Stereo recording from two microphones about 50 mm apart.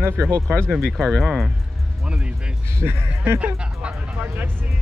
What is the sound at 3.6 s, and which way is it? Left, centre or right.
Speech, right.